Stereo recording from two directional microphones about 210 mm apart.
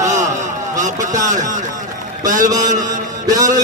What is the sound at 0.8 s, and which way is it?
Speech, 35° right (ahead or behind).